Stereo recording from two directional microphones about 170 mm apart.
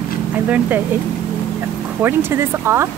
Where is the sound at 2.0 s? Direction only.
15° right (ahead or behind).